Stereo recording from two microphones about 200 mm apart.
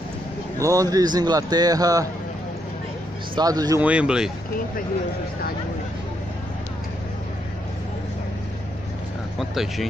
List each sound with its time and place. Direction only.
0.6 s a man's voice: 15° right (ahead or behind)
3.3 s a man's voice: 20° right (ahead or behind)
3.8 s speech: 5° right (ahead or behind)
9.4 s speech: centre (ahead or behind)